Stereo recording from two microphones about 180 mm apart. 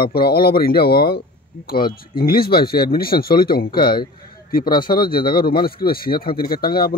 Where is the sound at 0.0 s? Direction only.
60° left (ahead or behind).